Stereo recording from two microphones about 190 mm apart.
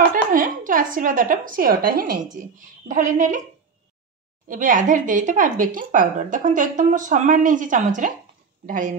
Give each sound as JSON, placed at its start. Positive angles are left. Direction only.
{"t": 0.3, "sound": "a woman's voice", "side_deg": -45}
{"t": 4.5, "sound": "speech", "side_deg": -45}